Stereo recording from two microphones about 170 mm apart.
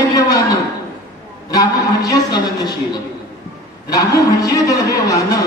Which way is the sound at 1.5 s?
20° left (ahead or behind).